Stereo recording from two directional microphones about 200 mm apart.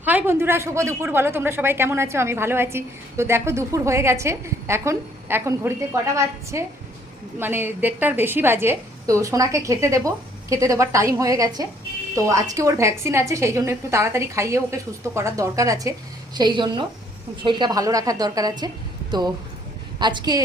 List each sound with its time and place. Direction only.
0.0 s a woman's voice: 10° right (ahead or behind)
20.0 s a woman's voice: 20° right (ahead or behind)